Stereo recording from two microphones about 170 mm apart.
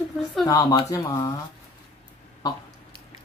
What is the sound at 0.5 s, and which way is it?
Speech, 20° left (ahead or behind).